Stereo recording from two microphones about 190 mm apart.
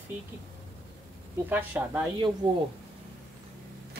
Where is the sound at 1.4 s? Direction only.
10° right (ahead or behind).